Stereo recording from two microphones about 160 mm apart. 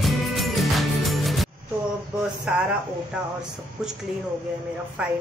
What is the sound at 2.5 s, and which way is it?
Speech, 5° right (ahead or behind).